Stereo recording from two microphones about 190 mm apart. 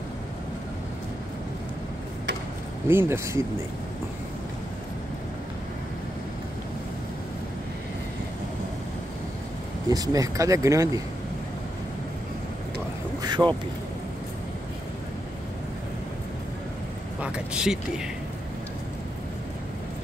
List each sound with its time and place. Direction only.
2.9 s speech: 15° right (ahead or behind)
9.8 s speech: 20° right (ahead or behind)
13.2 s speech: 25° right (ahead or behind)
17.2 s speech: 5° right (ahead or behind)